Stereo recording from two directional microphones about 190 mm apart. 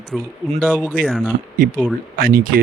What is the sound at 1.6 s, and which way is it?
Speech, 45° right (ahead or behind).